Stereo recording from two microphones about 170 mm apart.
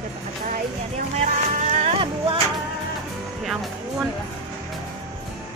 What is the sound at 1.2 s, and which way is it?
Vehicle, 45° right (ahead or behind).